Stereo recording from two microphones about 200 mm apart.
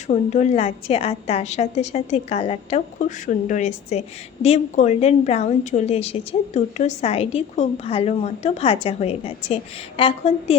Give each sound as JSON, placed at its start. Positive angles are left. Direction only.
{"t": 0.1, "sound": "a woman's voice", "side_deg": 35}